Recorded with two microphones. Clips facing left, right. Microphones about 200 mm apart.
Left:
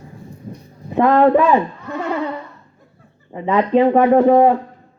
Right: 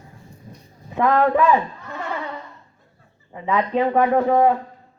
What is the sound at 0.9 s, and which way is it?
Speech, 30° left (ahead or behind).